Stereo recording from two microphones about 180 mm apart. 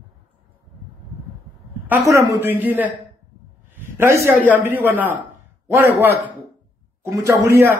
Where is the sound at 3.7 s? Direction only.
15° right (ahead or behind).